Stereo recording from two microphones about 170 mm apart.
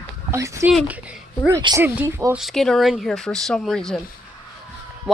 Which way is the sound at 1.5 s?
20° right (ahead or behind).